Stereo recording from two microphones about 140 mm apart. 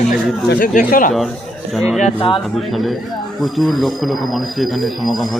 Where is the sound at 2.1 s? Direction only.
40° left (ahead or behind).